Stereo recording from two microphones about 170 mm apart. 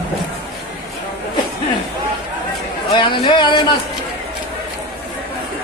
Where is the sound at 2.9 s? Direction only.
25° left (ahead or behind).